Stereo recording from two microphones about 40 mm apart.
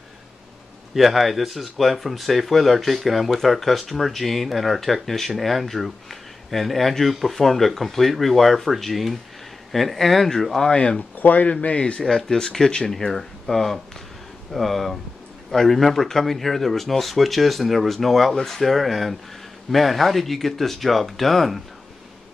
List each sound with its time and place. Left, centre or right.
0.9 s speech: centre
10.7 s a man's voice: left
11.1 s speech: left
11.6 s a man's voice: left
12.3 s speech: centre